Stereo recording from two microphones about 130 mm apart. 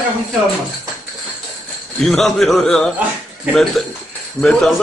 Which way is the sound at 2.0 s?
5° left (ahead or behind).